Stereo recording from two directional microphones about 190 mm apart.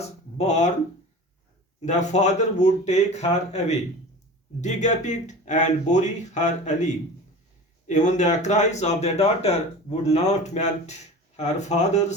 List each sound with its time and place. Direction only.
0.3 s speech: 40° left (ahead or behind)
1.8 s speech: 40° left (ahead or behind)